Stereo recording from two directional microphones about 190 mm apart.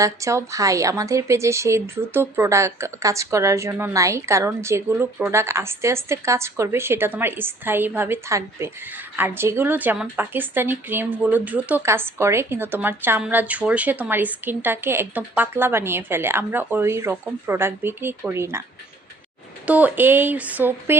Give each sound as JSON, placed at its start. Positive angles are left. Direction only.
{"t": 0.0, "sound": "speech", "side_deg": -15}
{"t": 19.6, "sound": "speech", "side_deg": -10}